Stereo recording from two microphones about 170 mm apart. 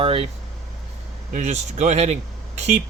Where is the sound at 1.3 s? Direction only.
45° right (ahead or behind).